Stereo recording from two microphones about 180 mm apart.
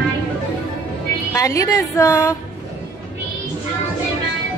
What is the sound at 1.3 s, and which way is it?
A woman's voice, 15° left (ahead or behind).